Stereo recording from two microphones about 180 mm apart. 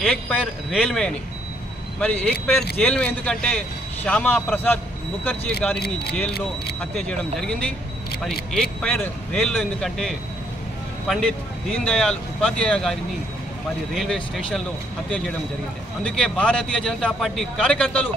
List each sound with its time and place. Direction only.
0.0 s speech: 5° left (ahead or behind)
2.8 s a man's voice: 5° left (ahead or behind)
5.8 s speech: 65° left (ahead or behind)
6.8 s speech: 5° left (ahead or behind)
13.9 s speech: centre (ahead or behind)